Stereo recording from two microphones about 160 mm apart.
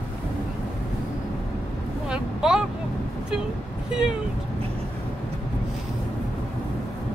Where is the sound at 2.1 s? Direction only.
5° right (ahead or behind).